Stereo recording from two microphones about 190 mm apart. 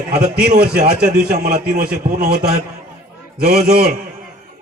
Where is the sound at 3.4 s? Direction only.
50° right (ahead or behind).